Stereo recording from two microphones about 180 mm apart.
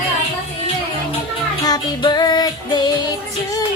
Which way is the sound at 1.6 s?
20° left (ahead or behind).